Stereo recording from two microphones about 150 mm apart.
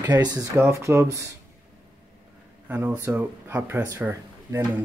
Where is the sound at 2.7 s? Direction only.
15° right (ahead or behind).